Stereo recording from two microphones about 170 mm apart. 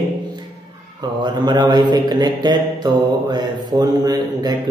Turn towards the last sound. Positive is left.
turn(degrees=-25)  # may be behind; listen again after turning